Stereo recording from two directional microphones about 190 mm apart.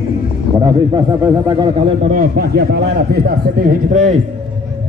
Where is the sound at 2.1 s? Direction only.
50° right (ahead or behind).